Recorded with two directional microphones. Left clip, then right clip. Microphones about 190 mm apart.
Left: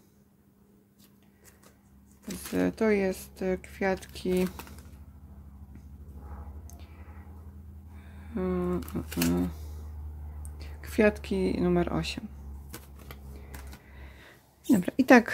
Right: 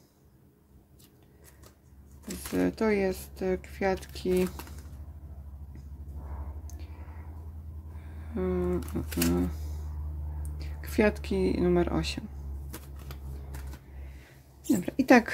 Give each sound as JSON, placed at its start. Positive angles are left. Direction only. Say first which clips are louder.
{"t": 2.2, "sound": "speech", "louder": "even", "side_deg": 10}
{"t": 8.4, "sound": "a sound", "louder": "right 1 dB", "side_deg": 15}
{"t": 8.9, "sound": "speech", "louder": "even", "side_deg": 10}
{"t": 10.6, "sound": "speech", "louder": "left 2 dB", "side_deg": 10}
{"t": 14.7, "sound": "mouse", "louder": "left 2 dB", "side_deg": 20}